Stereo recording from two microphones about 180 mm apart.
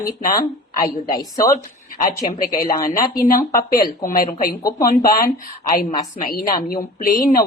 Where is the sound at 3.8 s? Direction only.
50° left (ahead or behind).